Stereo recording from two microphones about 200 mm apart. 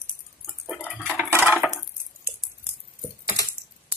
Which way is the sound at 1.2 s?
10° right (ahead or behind).